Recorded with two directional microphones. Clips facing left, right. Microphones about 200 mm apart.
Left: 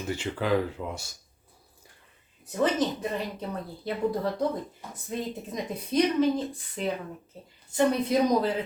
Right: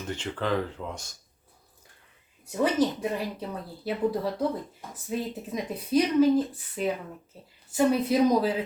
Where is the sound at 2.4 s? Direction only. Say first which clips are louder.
Right 1 dB; 10° right (ahead or behind).